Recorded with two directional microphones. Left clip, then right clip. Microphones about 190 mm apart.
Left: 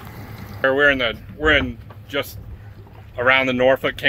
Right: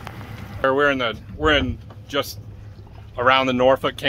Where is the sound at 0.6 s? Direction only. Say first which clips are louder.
Left 2 dB; centre (ahead or behind).